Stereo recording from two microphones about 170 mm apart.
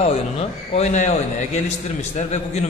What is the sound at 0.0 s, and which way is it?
A man's voice, 35° left (ahead or behind).